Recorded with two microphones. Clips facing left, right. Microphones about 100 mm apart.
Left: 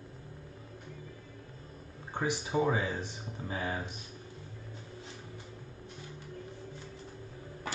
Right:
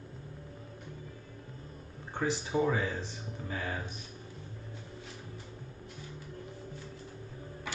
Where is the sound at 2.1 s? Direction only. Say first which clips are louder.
Even; 15° left (ahead or behind).